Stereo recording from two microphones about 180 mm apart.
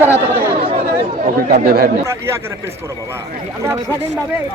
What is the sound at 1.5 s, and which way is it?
Speech, 55° right (ahead or behind).